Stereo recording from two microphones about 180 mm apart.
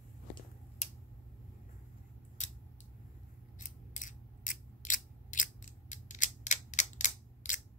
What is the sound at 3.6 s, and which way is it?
Scissors, 45° left (ahead or behind).